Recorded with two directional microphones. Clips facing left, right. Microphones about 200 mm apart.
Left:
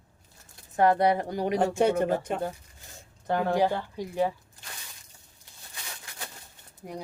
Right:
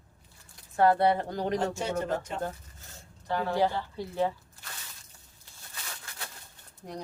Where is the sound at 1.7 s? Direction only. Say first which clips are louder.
Left 8 dB; 55° left (ahead or behind).